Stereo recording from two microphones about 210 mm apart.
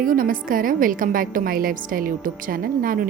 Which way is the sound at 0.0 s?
40° right (ahead or behind).